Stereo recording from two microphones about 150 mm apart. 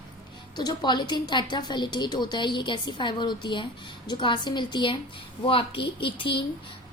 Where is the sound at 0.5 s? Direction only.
30° left (ahead or behind).